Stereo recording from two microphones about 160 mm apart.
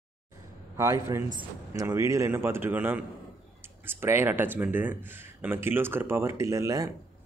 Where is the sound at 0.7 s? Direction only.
20° right (ahead or behind).